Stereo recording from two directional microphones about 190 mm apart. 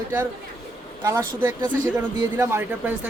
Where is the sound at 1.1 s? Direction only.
15° right (ahead or behind).